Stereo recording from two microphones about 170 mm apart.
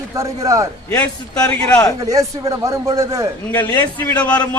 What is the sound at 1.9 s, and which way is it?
A man's voice, 20° right (ahead or behind).